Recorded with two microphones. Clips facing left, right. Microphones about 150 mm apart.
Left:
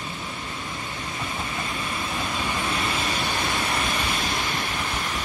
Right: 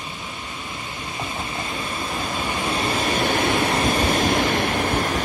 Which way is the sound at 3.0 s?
45° right (ahead or behind).